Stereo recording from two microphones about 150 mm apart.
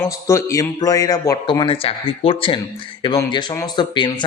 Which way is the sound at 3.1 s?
25° left (ahead or behind).